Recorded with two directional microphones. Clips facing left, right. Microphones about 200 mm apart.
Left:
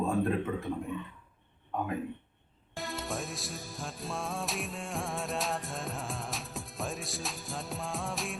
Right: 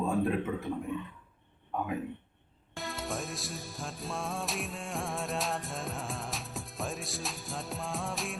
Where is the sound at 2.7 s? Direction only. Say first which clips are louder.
Even; centre (ahead or behind).